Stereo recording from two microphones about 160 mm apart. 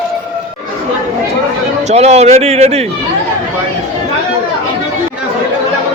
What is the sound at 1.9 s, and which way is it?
Speech, 45° right (ahead or behind).